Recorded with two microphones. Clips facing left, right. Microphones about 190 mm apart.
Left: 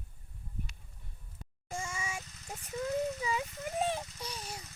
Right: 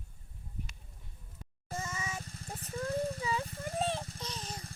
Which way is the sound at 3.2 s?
10° left (ahead or behind).